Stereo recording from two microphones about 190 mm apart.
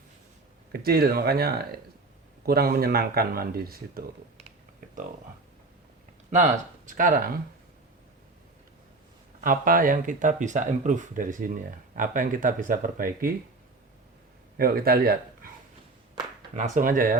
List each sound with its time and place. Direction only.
0.7 s speech: 55° right (ahead or behind)
6.3 s speech: 40° right (ahead or behind)
9.4 s speech: 45° right (ahead or behind)
14.6 s speech: 50° right (ahead or behind)
16.6 s speech: 40° right (ahead or behind)